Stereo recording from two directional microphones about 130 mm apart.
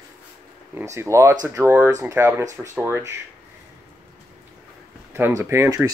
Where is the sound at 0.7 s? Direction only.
20° right (ahead or behind).